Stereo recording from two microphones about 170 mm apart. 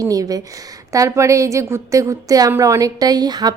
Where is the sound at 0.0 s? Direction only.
20° right (ahead or behind).